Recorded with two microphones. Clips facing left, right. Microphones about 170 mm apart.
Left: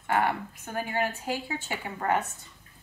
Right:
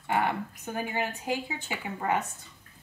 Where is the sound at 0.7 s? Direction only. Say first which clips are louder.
Left 2 dB; 15° right (ahead or behind).